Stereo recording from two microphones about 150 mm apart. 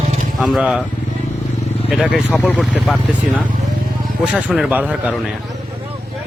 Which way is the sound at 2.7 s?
Centre (ahead or behind).